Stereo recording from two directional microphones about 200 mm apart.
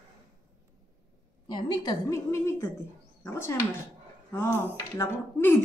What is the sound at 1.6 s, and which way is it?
Speech, 20° left (ahead or behind).